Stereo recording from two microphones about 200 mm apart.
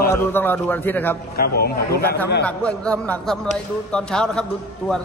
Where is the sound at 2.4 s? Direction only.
5° left (ahead or behind).